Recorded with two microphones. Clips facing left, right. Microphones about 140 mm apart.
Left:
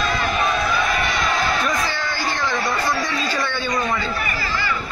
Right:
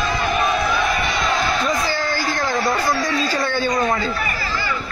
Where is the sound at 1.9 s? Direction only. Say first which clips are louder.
Right 3 dB; 40° right (ahead or behind).